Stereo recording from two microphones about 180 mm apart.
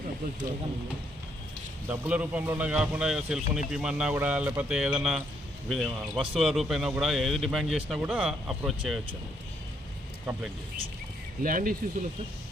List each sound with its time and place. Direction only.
1.9 s speech: 5° right (ahead or behind)
11.4 s speech: 50° right (ahead or behind)